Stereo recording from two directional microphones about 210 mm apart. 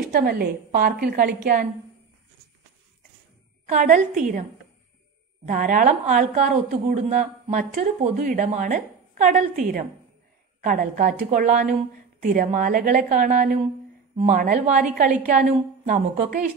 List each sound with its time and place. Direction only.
0.1 s a woman's voice: 45° right (ahead or behind)
3.6 s a woman's voice: 35° right (ahead or behind)
5.5 s a woman's voice: 40° right (ahead or behind)